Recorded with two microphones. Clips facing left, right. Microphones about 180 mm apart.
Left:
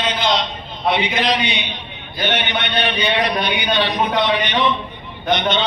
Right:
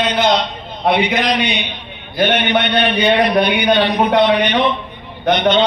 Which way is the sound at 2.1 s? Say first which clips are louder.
Right 7 dB; 50° right (ahead or behind).